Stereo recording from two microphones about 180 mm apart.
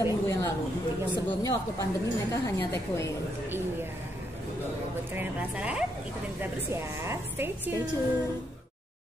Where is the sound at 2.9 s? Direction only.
15° left (ahead or behind).